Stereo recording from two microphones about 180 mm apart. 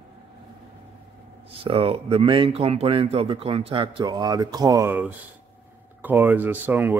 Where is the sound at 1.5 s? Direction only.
30° right (ahead or behind).